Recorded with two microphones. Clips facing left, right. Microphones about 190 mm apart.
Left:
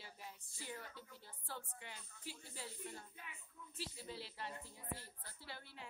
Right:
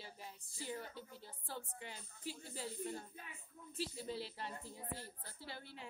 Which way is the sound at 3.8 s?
35° right (ahead or behind).